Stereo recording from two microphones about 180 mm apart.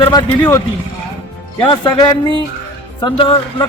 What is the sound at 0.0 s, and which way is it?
Speech, 25° left (ahead or behind).